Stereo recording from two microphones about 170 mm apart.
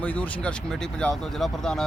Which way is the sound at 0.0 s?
10° left (ahead or behind).